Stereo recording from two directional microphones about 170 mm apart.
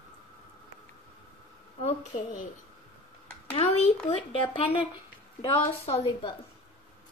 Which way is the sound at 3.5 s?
35° left (ahead or behind).